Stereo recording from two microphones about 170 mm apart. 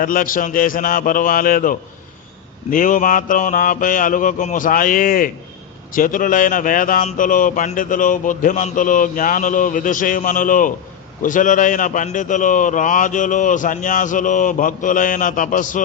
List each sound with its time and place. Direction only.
0.0 s a man's voice: 55° left (ahead or behind)